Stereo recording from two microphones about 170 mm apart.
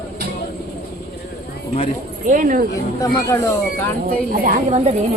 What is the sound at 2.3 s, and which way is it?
Speech, 50° right (ahead or behind).